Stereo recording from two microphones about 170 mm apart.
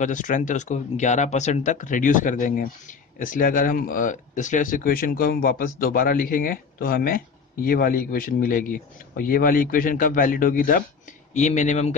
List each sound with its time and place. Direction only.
0.0 s speech: 50° left (ahead or behind)
11.3 s speech: 45° left (ahead or behind)